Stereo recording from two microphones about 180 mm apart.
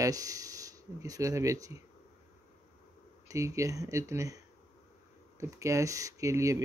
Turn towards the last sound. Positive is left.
turn(degrees=-15)  # may be behind; listen again after turning